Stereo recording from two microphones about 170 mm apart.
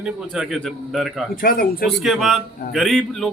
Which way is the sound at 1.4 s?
60° left (ahead or behind).